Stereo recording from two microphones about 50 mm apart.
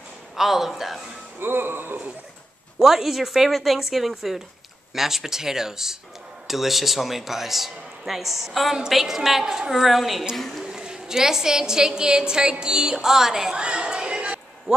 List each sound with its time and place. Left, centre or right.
0.4 s a man's voice: centre
1.4 s speech: right
2.8 s a man's voice: centre
10.6 s a woman's voice: centre
13.6 s chatter: centre